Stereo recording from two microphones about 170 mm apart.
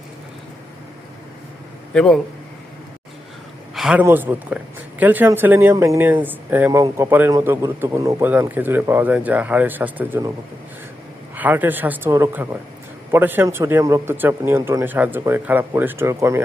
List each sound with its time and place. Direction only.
1.9 s a man's voice: 5° left (ahead or behind)
3.8 s a sound: 5° right (ahead or behind)
4.0 s speech: 10° right (ahead or behind)
11.3 s speech: 10° right (ahead or behind)